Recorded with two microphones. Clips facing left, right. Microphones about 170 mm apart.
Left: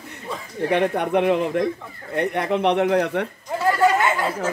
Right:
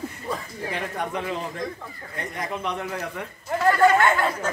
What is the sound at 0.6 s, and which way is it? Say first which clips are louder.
Speech: left 14 dB; 65° left (ahead or behind).